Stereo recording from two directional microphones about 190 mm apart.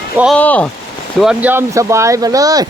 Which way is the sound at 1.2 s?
5° right (ahead or behind).